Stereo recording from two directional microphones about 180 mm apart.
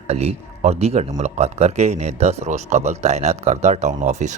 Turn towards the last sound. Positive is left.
turn(degrees=-40)  # may be behind; listen again after turning